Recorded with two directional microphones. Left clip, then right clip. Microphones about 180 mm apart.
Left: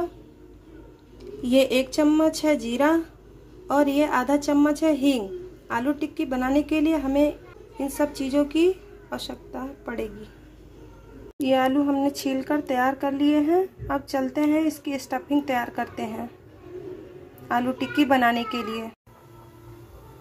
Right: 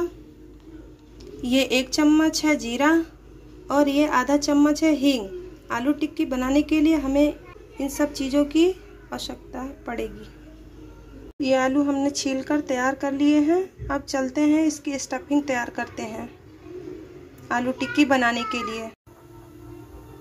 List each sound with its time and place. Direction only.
1.4 s a woman's voice: 10° left (ahead or behind)
11.4 s speech: 5° left (ahead or behind)
17.5 s speech: 5° left (ahead or behind)